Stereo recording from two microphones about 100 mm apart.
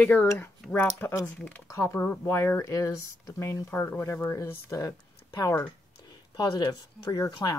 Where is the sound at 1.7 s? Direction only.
30° left (ahead or behind).